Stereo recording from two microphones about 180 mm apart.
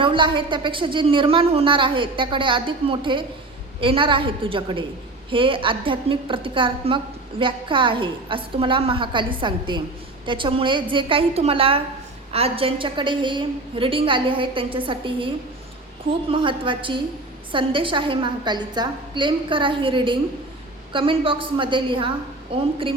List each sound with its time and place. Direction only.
0.0 s a woman's voice: 30° right (ahead or behind)
16.3 s a woman's voice: 30° right (ahead or behind)